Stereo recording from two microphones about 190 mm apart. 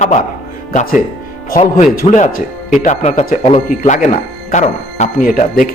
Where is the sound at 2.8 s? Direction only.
35° left (ahead or behind).